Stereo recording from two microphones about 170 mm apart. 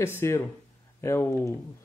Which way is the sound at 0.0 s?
15° left (ahead or behind).